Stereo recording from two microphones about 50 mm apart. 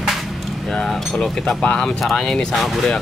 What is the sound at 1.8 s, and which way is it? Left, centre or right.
Speech, centre.